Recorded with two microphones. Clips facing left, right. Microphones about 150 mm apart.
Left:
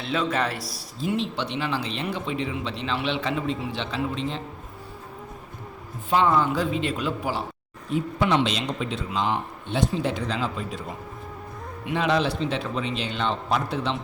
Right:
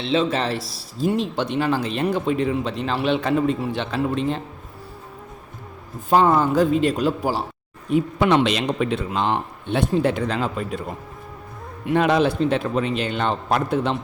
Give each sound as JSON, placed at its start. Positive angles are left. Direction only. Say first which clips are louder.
{"t": 0.0, "sound": "a man's voice", "louder": "right 4 dB", "side_deg": -25}
{"t": 0.9, "sound": "speech", "louder": "right 5 dB", "side_deg": -40}
{"t": 6.1, "sound": "speech", "louder": "right 4 dB", "side_deg": -45}
{"t": 7.9, "sound": "speech", "louder": "right 5 dB", "side_deg": -60}
{"t": 11.9, "sound": "speech", "louder": "right 5 dB", "side_deg": -50}